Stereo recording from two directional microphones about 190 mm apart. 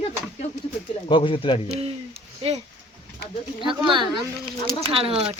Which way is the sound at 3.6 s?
25° right (ahead or behind).